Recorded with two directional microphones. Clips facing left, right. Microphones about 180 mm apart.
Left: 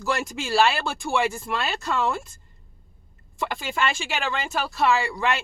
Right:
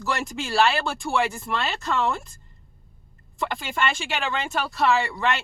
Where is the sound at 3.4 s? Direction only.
Centre (ahead or behind).